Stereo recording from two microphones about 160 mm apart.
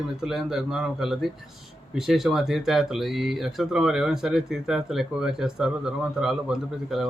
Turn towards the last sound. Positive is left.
turn(degrees=0)  # may be behind; listen again after turning